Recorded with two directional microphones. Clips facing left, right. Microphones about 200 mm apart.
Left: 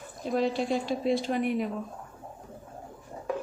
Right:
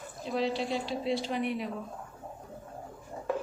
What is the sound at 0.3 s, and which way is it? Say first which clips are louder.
A woman's voice: left 3 dB; 50° left (ahead or behind).